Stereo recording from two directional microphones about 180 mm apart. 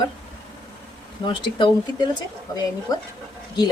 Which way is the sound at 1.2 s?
25° left (ahead or behind).